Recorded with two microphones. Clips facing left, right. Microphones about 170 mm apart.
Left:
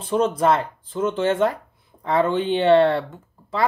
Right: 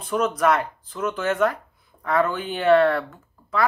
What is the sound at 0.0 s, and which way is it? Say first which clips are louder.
Speech: left 2 dB; 30° left (ahead or behind).